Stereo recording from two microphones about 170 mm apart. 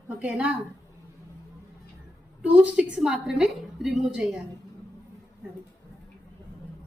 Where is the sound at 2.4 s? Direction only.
5° right (ahead or behind).